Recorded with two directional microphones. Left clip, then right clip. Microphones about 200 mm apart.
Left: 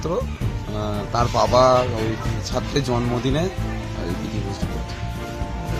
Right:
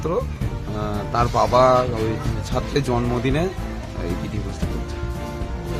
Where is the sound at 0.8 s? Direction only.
5° right (ahead or behind).